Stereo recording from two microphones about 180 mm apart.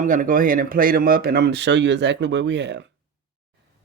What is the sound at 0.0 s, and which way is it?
Speech, 45° right (ahead or behind).